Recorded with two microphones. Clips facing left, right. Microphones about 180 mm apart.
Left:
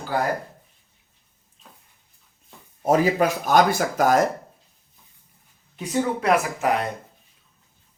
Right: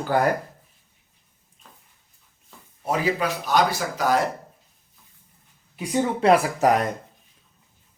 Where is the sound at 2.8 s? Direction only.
45° left (ahead or behind).